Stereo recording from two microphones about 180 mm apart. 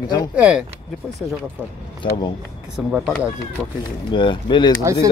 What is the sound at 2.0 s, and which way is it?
Speech, 25° left (ahead or behind).